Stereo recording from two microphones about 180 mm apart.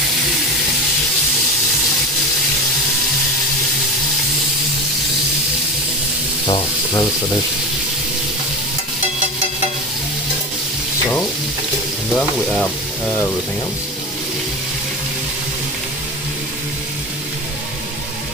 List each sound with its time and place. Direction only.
6.4 s sizzle: 25° left (ahead or behind)